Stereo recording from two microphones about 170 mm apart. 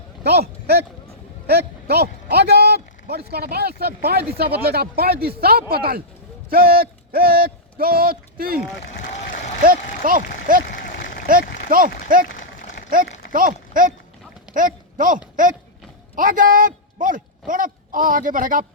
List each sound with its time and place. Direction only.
0.2 s a man's voice: 70° right (ahead or behind)
9.6 s speech: 55° right (ahead or behind)
13.3 s a man's voice: 55° right (ahead or behind)